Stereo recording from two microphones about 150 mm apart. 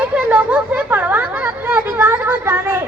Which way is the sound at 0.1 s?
10° right (ahead or behind).